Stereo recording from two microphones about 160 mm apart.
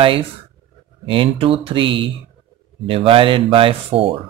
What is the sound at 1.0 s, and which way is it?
Speech, 35° right (ahead or behind).